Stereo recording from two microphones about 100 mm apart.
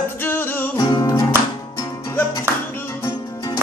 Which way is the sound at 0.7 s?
45° left (ahead or behind).